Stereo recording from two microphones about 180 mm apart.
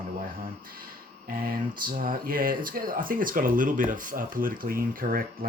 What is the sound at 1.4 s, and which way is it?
Speech, 55° right (ahead or behind).